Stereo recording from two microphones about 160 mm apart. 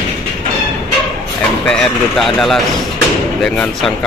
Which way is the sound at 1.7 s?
Centre (ahead or behind).